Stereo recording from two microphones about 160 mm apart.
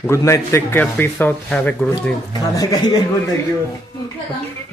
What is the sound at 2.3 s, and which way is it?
Speech, 25° left (ahead or behind).